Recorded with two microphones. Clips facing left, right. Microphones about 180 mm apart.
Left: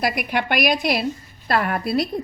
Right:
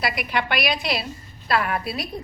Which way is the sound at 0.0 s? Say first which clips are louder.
Left 3 dB; 50° left (ahead or behind).